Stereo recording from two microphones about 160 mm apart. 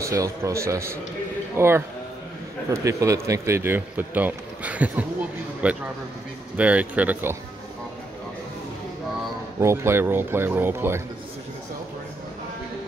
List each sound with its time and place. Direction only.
0.0 s a man's voice: 20° right (ahead or behind)
9.6 s a man's voice: 15° right (ahead or behind)